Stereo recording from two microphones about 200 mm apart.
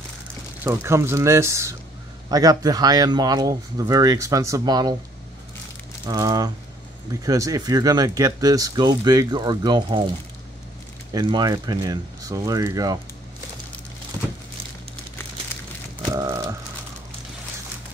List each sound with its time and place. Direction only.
0.7 s speech: 15° right (ahead or behind)
6.0 s speech: 20° right (ahead or behind)
11.1 s speech: 20° right (ahead or behind)
16.1 s a sound: 20° right (ahead or behind)